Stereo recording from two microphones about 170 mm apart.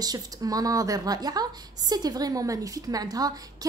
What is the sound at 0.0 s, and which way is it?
A woman's voice, 20° right (ahead or behind).